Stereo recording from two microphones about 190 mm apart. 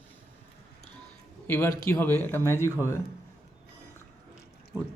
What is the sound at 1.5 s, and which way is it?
A man's voice, 10° left (ahead or behind).